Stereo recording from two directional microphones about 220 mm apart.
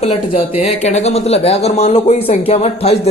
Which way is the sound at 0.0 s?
25° left (ahead or behind).